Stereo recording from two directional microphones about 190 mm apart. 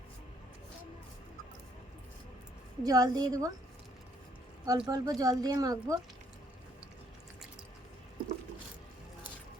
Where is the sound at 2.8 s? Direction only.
20° right (ahead or behind).